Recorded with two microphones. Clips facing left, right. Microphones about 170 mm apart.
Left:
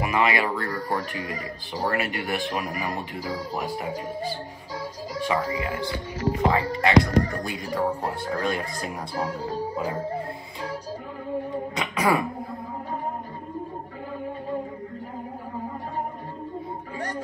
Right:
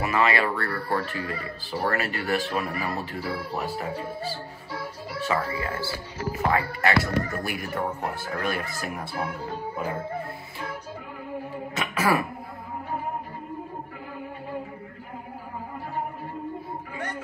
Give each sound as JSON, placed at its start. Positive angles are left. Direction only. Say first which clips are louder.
{"t": 0.0, "sound": "speech", "louder": "even", "side_deg": 15}
{"t": 4.7, "sound": "music", "louder": "left 2 dB", "side_deg": 15}
{"t": 6.4, "sound": "speech", "louder": "left 1 dB", "side_deg": 15}
{"t": 9.1, "sound": "speech", "louder": "left 6 dB", "side_deg": 35}
{"t": 11.8, "sound": "throat clearing", "louder": "left 1 dB", "side_deg": 20}